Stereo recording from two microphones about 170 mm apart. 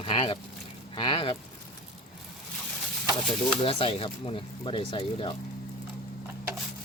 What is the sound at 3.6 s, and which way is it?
Speech, 35° left (ahead or behind).